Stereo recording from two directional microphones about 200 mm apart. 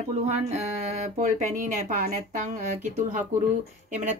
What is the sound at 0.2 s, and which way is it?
Speech, 35° right (ahead or behind).